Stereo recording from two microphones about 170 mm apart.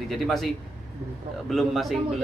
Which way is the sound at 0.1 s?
Centre (ahead or behind).